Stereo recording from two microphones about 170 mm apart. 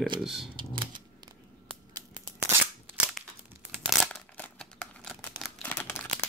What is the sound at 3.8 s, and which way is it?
Crumpling, centre (ahead or behind).